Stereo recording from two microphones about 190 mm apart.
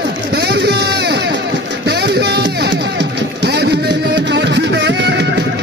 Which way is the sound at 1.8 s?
60° right (ahead or behind).